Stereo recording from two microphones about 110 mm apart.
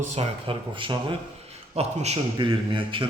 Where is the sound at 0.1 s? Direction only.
60° right (ahead or behind).